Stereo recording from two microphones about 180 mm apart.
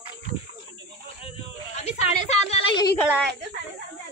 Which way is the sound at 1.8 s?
40° left (ahead or behind).